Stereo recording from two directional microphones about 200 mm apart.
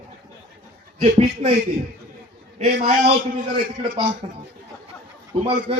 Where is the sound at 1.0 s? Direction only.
30° right (ahead or behind).